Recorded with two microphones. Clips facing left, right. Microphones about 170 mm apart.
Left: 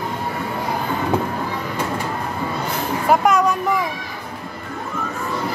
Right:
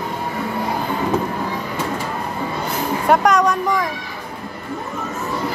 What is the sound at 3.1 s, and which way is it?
Speech, 5° left (ahead or behind).